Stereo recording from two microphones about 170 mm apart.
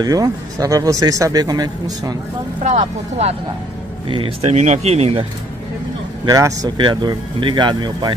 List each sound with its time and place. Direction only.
0.0 s speech: 20° right (ahead or behind)
2.6 s speech: 40° right (ahead or behind)
6.2 s speech: 20° right (ahead or behind)